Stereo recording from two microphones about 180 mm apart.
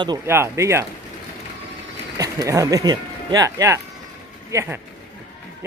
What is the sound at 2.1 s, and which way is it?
Speech, 20° right (ahead or behind).